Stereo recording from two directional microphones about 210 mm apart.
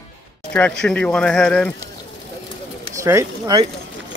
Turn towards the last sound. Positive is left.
turn(degrees=-15)  # may be behind; listen again after turning